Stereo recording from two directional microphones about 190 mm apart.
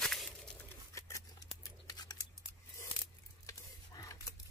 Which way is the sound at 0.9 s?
15° left (ahead or behind).